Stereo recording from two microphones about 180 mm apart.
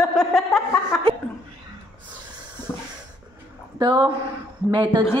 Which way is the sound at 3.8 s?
25° right (ahead or behind).